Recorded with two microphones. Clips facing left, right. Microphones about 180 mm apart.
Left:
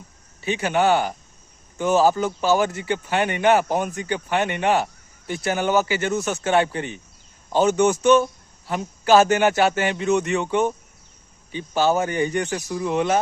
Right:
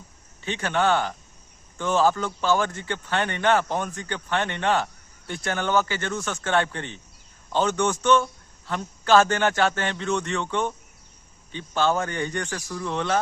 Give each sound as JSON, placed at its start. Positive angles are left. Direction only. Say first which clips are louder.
{"t": 0.4, "sound": "speech", "louder": "left 4 dB", "side_deg": 10}
{"t": 12.5, "sound": "speech", "louder": "left 6 dB", "side_deg": 20}
{"t": 12.8, "sound": "speech", "louder": "left 5 dB", "side_deg": 10}